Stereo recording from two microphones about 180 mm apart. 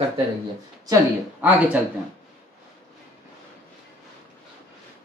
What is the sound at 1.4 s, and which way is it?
Speech, 10° right (ahead or behind).